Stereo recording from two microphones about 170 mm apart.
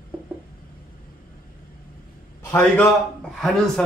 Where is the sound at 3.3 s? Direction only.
Centre (ahead or behind).